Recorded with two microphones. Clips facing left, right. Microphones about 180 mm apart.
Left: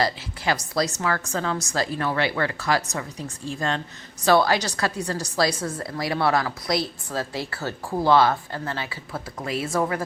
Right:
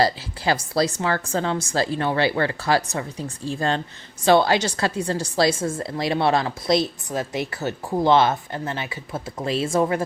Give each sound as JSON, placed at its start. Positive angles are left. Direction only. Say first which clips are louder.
{"t": 0.0, "sound": "a woman's voice", "louder": "right 4 dB", "side_deg": -30}